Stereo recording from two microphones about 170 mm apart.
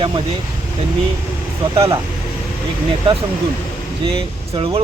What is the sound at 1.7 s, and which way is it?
Speech, 35° right (ahead or behind).